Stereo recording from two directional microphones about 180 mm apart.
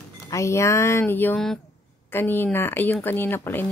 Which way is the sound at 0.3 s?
15° left (ahead or behind).